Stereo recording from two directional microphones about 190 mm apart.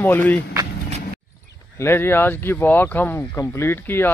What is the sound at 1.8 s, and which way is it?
Speech, 10° left (ahead or behind).